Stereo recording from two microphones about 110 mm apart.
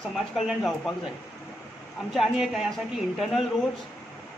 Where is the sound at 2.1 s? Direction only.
Centre (ahead or behind).